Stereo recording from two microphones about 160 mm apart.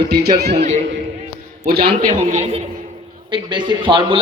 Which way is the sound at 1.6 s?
75° right (ahead or behind).